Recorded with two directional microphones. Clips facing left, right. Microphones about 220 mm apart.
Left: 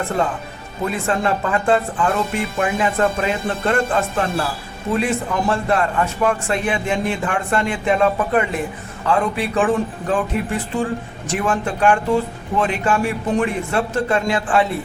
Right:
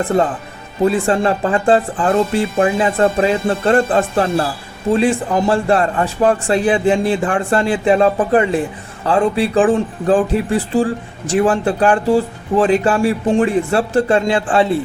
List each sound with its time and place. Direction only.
0.0 s speech: 35° right (ahead or behind)